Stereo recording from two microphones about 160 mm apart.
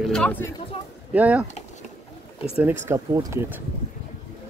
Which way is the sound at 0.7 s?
35° left (ahead or behind).